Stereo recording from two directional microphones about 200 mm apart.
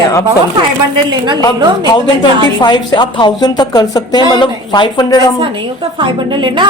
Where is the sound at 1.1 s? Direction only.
20° right (ahead or behind).